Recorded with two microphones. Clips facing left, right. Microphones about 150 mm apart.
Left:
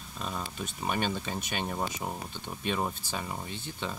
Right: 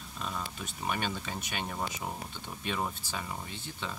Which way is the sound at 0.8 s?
25° left (ahead or behind).